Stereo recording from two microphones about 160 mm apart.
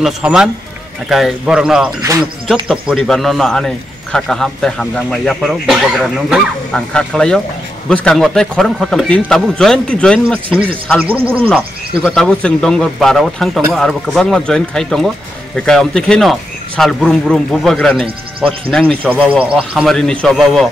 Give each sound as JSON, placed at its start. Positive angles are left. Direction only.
{"t": 0.0, "sound": "speech", "side_deg": -5}
{"t": 2.0, "sound": "speech", "side_deg": -20}
{"t": 2.4, "sound": "speech", "side_deg": -5}
{"t": 11.1, "sound": "a man's voice", "side_deg": -10}
{"t": 11.4, "sound": "speech", "side_deg": 10}
{"t": 19.0, "sound": "a man's voice", "side_deg": -5}
{"t": 20.0, "sound": "speech", "side_deg": 5}